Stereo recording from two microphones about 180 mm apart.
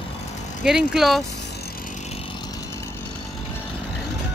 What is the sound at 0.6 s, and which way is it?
Speech, centre (ahead or behind).